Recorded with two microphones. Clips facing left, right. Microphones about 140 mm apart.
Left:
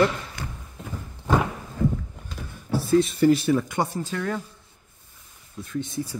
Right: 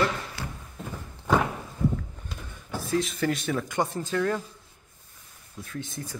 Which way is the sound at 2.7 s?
30° left (ahead or behind).